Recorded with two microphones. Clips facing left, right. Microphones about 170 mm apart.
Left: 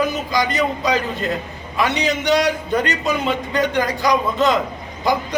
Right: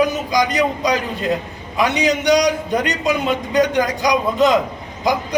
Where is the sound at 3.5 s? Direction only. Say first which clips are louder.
Right 5 dB; 15° right (ahead or behind).